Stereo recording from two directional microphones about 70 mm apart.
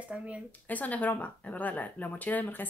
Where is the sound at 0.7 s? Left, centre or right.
Left.